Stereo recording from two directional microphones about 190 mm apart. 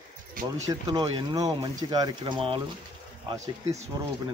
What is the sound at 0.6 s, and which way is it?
Speech, 20° right (ahead or behind).